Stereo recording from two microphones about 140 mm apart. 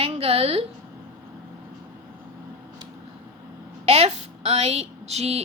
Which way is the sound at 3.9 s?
45° right (ahead or behind).